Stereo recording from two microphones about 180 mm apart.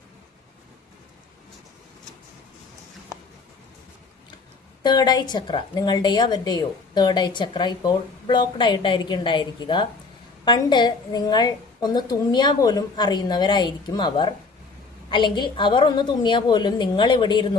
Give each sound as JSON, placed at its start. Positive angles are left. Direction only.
{"t": 4.8, "sound": "a woman's voice", "side_deg": 25}